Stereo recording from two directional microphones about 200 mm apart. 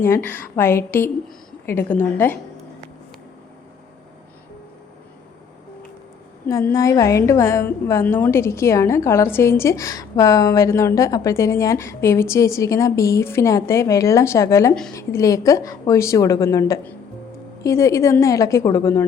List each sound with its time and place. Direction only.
0.0 s a woman's voice: 10° left (ahead or behind)
6.5 s a woman's voice: 15° left (ahead or behind)